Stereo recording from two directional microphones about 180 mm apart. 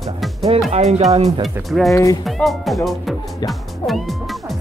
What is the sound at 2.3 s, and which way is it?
Speech, centre (ahead or behind).